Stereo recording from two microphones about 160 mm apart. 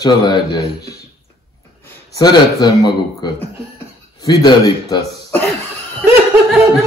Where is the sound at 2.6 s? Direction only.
25° left (ahead or behind).